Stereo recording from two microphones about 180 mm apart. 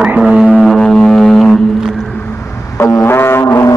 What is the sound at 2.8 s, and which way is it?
Music, 15° left (ahead or behind).